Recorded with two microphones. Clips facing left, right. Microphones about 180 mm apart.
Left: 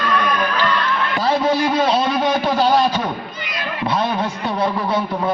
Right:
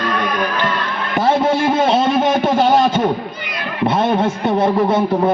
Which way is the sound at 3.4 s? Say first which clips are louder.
Right 4 dB; 55° right (ahead or behind).